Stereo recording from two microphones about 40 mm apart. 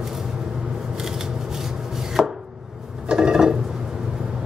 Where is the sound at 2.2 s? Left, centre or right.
Centre.